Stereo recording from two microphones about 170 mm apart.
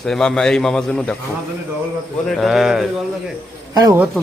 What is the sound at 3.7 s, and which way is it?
Speech, 20° right (ahead or behind).